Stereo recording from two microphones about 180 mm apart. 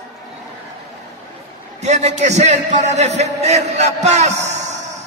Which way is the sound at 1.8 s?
40° right (ahead or behind).